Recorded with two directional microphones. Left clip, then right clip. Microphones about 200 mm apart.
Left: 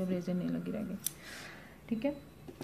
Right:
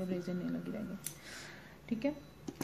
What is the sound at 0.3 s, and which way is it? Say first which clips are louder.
Speech: left 3 dB; 15° left (ahead or behind).